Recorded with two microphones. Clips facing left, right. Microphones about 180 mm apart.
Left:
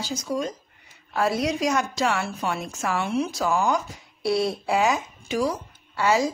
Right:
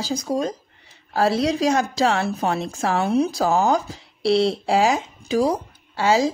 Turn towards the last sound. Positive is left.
turn(degrees=-30)  # may be behind; listen again after turning